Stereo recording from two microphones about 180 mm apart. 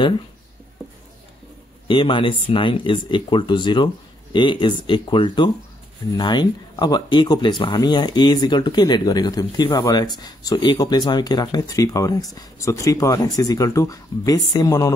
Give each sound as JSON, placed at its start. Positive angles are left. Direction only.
{"t": 1.9, "sound": "speech", "side_deg": 25}